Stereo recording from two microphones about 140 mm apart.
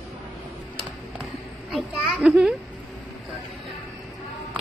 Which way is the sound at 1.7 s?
Centre (ahead or behind).